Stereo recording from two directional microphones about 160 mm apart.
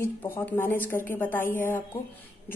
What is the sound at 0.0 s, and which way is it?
A woman's voice, 10° left (ahead or behind).